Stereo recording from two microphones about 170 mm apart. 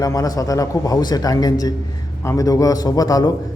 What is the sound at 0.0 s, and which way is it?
A man's voice, 20° left (ahead or behind).